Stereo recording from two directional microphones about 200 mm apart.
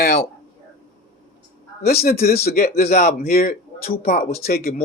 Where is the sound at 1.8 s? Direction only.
50° left (ahead or behind).